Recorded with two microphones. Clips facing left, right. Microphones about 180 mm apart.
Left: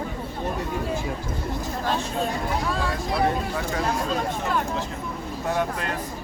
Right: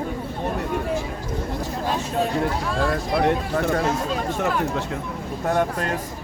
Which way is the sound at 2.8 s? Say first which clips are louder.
Right 6 dB; 60° right (ahead or behind).